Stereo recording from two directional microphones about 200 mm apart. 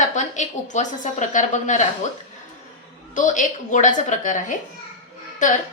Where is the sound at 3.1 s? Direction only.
40° left (ahead or behind).